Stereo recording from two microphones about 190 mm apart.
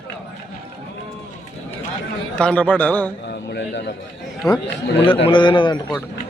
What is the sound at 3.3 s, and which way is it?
Speech, 65° left (ahead or behind).